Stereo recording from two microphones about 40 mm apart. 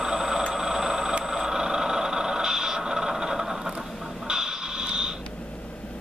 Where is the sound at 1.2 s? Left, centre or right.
Centre.